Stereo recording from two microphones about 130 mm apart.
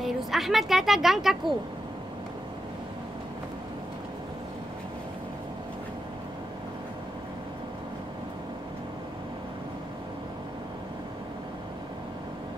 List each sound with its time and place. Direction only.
0.0 s a woman's voice: centre (ahead or behind)